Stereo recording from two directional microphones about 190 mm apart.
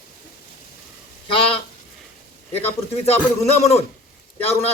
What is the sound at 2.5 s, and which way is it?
A man's voice, 35° left (ahead or behind).